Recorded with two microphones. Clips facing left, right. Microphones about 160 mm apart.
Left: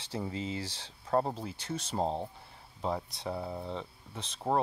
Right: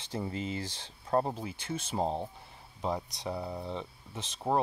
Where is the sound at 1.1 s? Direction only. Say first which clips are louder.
Even; 5° right (ahead or behind).